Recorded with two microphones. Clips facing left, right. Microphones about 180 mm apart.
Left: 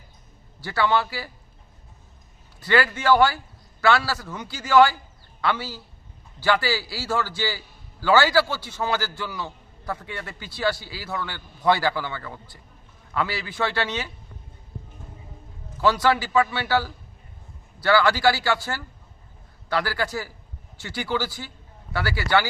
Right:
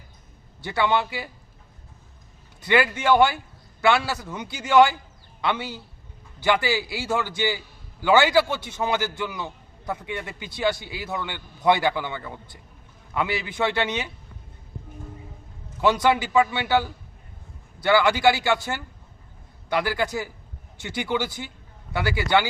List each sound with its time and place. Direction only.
0.6 s a man's voice: 20° right (ahead or behind)
2.6 s a man's voice: 20° right (ahead or behind)
15.8 s a man's voice: 20° right (ahead or behind)